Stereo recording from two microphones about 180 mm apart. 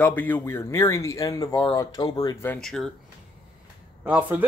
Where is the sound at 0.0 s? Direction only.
10° left (ahead or behind).